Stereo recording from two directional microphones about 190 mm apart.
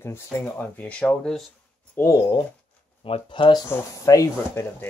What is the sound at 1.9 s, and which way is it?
Speech, 15° left (ahead or behind).